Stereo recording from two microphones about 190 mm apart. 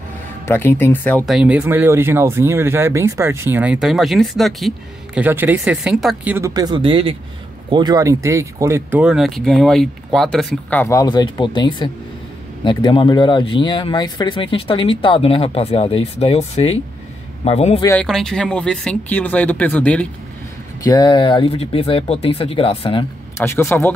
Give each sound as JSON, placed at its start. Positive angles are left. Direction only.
{"t": 0.5, "sound": "speech", "side_deg": 10}
{"t": 6.3, "sound": "a man's voice", "side_deg": -20}
{"t": 18.0, "sound": "speech", "side_deg": 0}
{"t": 20.8, "sound": "speech", "side_deg": 20}
{"t": 23.3, "sound": "speech", "side_deg": 15}